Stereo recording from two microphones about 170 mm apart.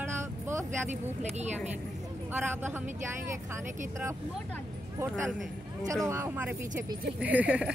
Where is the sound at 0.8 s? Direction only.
40° right (ahead or behind).